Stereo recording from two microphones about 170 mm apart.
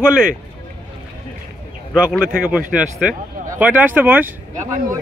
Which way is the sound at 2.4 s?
5° right (ahead or behind).